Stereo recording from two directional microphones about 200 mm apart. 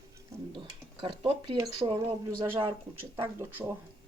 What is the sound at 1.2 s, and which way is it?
Speech, 25° right (ahead or behind).